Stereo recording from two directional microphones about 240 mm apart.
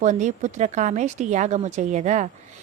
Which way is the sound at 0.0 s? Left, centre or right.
Right.